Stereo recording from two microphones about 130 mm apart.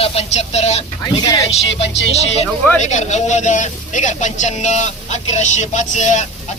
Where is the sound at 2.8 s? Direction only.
65° left (ahead or behind).